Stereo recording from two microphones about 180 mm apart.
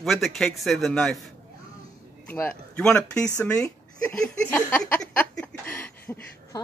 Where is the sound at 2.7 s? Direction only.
5° left (ahead or behind).